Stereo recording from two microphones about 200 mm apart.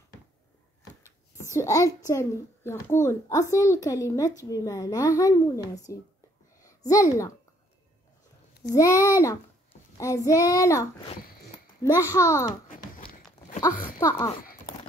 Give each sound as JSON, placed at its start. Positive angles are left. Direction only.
{"t": 1.5, "sound": "a child's voice", "side_deg": 15}
{"t": 8.7, "sound": "a child's voice", "side_deg": 15}
{"t": 12.6, "sound": "a sound", "side_deg": 40}
{"t": 13.6, "sound": "a child's voice", "side_deg": 20}